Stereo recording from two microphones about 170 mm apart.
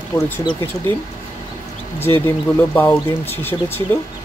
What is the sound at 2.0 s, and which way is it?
Speech, 15° left (ahead or behind).